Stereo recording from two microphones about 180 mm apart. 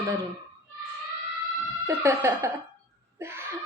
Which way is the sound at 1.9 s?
15° right (ahead or behind).